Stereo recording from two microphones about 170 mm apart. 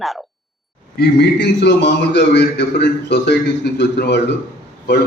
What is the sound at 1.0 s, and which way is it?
A man's voice, 85° left.